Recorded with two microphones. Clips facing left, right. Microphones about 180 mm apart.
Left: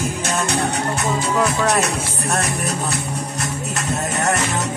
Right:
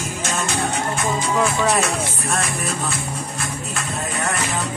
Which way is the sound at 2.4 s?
65° left (ahead or behind).